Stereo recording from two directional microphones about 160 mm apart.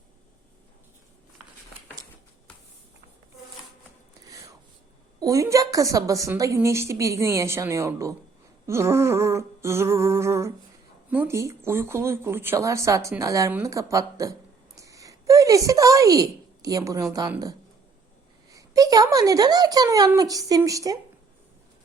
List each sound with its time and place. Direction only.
4.3 s a sound: 20° right (ahead or behind)
5.2 s a woman's voice: 20° right (ahead or behind)
18.5 s a woman's voice: 20° right (ahead or behind)